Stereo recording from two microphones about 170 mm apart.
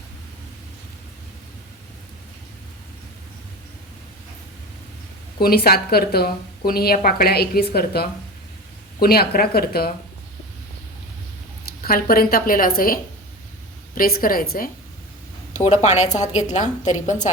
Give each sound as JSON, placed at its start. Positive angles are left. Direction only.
{"t": 5.4, "sound": "speech", "side_deg": 65}
{"t": 11.8, "sound": "speech", "side_deg": 60}
{"t": 15.5, "sound": "a woman's voice", "side_deg": 40}